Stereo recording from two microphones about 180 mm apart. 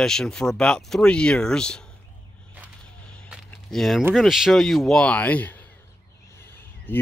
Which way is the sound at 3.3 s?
Centre (ahead or behind).